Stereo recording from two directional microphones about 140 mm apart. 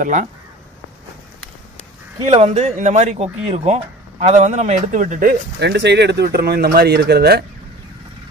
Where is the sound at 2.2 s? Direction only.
50° right (ahead or behind); by 5.3 s 65° right (ahead or behind).